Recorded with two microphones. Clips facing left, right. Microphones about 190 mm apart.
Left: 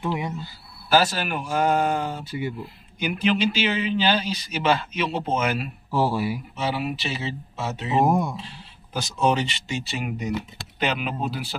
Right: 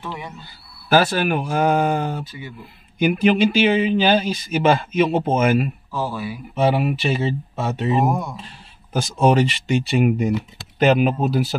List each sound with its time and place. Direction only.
0.0 s speech: 15° left (ahead or behind)
0.8 s speech: 55° right (ahead or behind)
5.9 s speech: 30° left (ahead or behind)
6.5 s speech: 55° right (ahead or behind)
8.1 s speech: 15° left (ahead or behind)
8.4 s speech: 50° right (ahead or behind)
10.8 s speech: 45° right (ahead or behind)